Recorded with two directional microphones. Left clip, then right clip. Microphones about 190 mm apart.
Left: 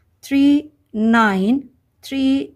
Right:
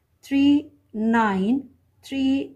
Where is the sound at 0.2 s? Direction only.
45° left (ahead or behind).